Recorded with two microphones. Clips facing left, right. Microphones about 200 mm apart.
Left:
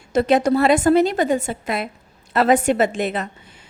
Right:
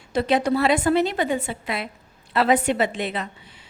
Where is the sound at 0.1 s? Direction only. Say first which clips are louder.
Left 4 dB; 45° left (ahead or behind).